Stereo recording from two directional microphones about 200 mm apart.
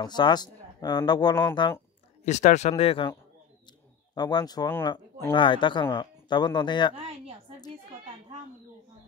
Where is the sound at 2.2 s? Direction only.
35° left (ahead or behind).